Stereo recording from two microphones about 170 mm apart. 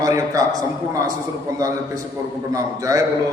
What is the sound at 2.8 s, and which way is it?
Speech, 20° right (ahead or behind).